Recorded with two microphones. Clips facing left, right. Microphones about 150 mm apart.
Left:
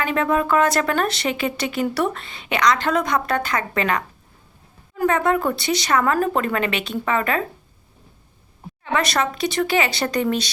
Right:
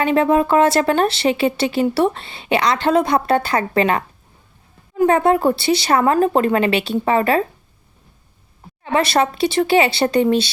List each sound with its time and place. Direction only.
0.0 s speech: 30° right (ahead or behind)
5.0 s speech: 30° right (ahead or behind)
8.8 s speech: 30° right (ahead or behind)